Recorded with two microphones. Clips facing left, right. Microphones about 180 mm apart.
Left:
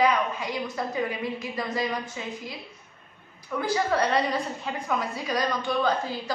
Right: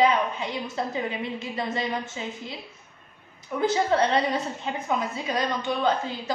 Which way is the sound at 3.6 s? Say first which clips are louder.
Right 3 dB; 25° right (ahead or behind).